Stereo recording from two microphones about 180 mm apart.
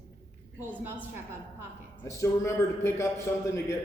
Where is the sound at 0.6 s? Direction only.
10° right (ahead or behind).